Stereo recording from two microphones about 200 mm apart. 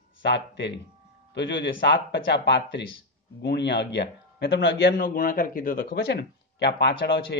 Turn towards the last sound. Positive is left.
turn(degrees=60)  # may be behind; listen again after turning